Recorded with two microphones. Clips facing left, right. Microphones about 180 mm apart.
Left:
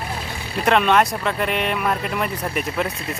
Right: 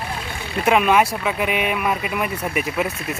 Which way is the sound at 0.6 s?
5° right (ahead or behind).